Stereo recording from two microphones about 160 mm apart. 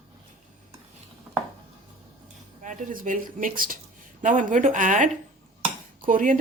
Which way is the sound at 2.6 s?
55° right (ahead or behind).